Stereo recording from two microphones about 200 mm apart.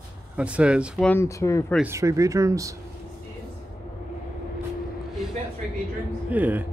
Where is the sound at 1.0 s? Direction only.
15° left (ahead or behind).